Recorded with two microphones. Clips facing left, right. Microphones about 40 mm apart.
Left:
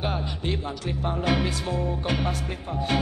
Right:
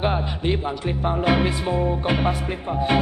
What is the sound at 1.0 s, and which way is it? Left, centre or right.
Music, centre.